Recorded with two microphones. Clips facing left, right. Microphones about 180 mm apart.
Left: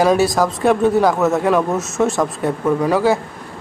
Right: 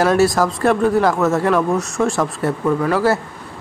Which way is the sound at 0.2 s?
Centre (ahead or behind).